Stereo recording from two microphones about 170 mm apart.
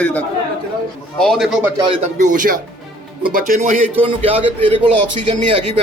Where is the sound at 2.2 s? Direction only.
50° right (ahead or behind); by 4.8 s 35° right (ahead or behind).